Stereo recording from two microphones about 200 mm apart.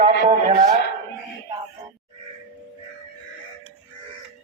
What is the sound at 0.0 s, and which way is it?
Speech, 30° right (ahead or behind).